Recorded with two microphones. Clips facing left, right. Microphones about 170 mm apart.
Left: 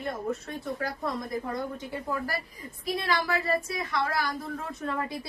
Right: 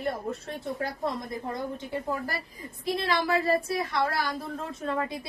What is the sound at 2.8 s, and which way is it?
A woman's voice, 25° right (ahead or behind).